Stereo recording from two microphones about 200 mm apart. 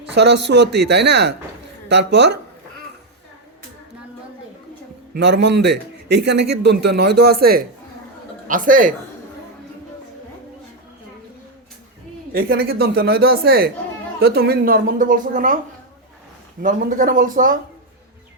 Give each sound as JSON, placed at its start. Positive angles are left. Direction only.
{"t": 0.1, "sound": "a man's voice", "side_deg": -60}
{"t": 5.1, "sound": "a man's voice", "side_deg": -60}
{"t": 12.3, "sound": "a woman's voice", "side_deg": -50}
{"t": 16.6, "sound": "speech", "side_deg": -45}